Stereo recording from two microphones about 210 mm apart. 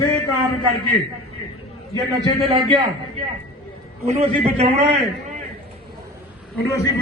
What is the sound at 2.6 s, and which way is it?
A man's voice, 25° right (ahead or behind).